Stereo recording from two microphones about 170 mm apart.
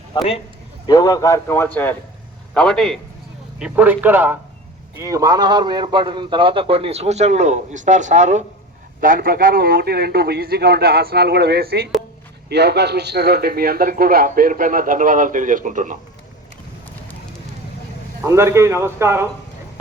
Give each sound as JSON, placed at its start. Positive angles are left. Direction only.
{"t": 0.1, "sound": "a man's voice", "side_deg": 25}
{"t": 3.6, "sound": "a man's voice", "side_deg": -10}
{"t": 9.0, "sound": "a man's voice", "side_deg": -55}
{"t": 18.3, "sound": "a man's voice", "side_deg": -15}